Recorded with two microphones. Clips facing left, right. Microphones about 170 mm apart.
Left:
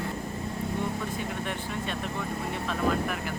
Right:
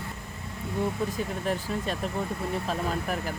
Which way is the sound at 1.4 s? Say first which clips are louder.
Right 4 dB; 35° right (ahead or behind).